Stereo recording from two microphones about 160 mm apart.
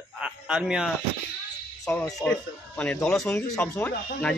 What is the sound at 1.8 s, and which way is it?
Speech, 15° left (ahead or behind).